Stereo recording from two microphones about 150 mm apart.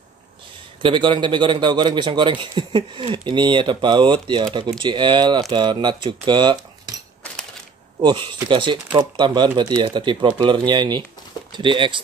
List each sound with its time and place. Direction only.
0.8 s a man's voice: 35° right (ahead or behind)
8.0 s a man's voice: 30° right (ahead or behind)